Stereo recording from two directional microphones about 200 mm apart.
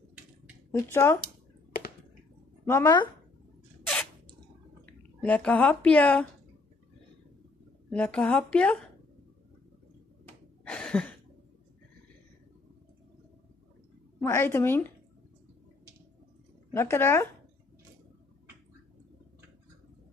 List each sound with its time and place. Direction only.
0.7 s speech: 15° left (ahead or behind)
2.6 s speech: 15° left (ahead or behind)
5.2 s a woman's voice: 5° left (ahead or behind)
7.9 s a woman's voice: 5° left (ahead or behind)
10.2 s a sound: 5° left (ahead or behind)
14.2 s a woman's voice: 10° left (ahead or behind)
16.7 s a woman's voice: 10° left (ahead or behind)